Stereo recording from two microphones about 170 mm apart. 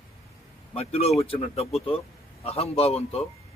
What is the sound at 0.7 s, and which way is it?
Speech, 35° left (ahead or behind).